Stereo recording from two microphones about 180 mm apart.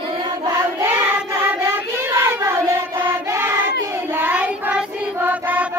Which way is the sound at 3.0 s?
15° right (ahead or behind).